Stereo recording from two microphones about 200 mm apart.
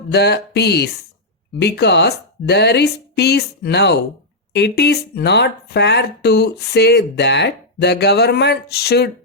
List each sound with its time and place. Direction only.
0.1 s speech: 55° left (ahead or behind)